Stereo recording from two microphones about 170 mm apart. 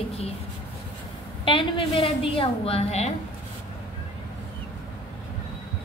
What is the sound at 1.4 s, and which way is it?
A woman's voice, 30° left (ahead or behind).